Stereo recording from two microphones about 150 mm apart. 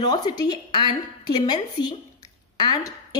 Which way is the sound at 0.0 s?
25° left (ahead or behind).